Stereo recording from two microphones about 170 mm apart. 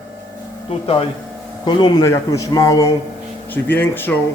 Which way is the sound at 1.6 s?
25° left (ahead or behind).